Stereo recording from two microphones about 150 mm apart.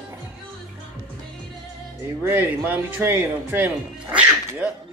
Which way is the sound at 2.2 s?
15° right (ahead or behind).